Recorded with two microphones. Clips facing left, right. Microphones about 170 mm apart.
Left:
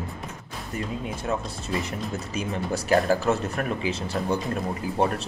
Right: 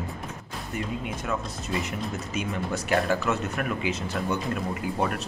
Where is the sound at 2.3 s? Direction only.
35° left (ahead or behind).